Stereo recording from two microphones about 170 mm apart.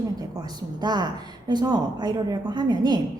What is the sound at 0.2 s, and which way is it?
A woman's voice, 20° right (ahead or behind).